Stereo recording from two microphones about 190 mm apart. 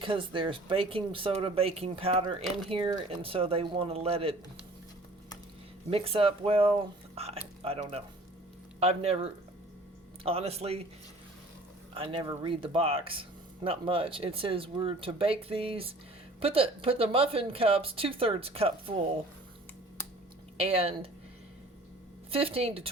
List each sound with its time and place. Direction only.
0.0 s speech: 25° right (ahead or behind)
5.9 s speech: 30° right (ahead or behind)
11.9 s speech: 30° right (ahead or behind)
20.6 s speech: 30° right (ahead or behind)
22.3 s speech: 30° right (ahead or behind)